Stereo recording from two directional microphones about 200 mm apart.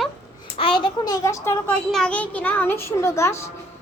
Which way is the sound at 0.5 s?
25° left (ahead or behind).